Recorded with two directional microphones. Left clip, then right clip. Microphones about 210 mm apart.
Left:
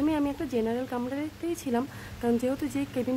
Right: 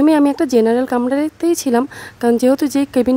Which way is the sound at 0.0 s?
45° right (ahead or behind).